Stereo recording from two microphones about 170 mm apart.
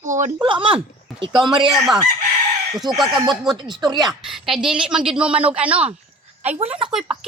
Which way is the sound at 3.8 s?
25° right (ahead or behind).